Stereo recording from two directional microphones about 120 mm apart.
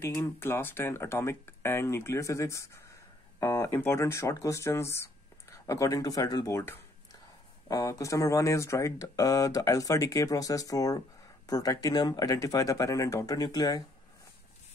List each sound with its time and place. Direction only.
0.0 s speech: 20° left (ahead or behind)